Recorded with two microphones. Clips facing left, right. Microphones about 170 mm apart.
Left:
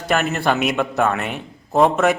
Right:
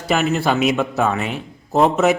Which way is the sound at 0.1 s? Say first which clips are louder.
Right 1 dB; 5° right (ahead or behind).